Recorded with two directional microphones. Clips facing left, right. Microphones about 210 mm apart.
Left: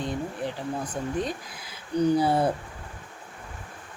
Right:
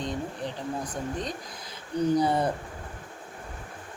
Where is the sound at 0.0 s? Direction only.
5° left (ahead or behind).